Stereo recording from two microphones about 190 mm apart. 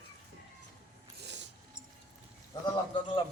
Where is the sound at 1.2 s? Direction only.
65° right (ahead or behind).